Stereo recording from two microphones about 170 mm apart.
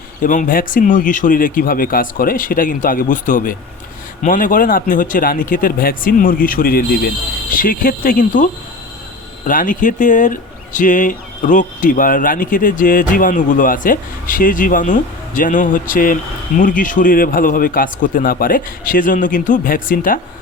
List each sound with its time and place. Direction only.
0.2 s speech: 50° left (ahead or behind)
9.5 s speech: 50° left (ahead or behind)